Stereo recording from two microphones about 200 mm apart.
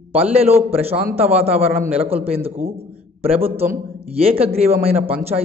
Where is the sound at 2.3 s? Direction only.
30° right (ahead or behind).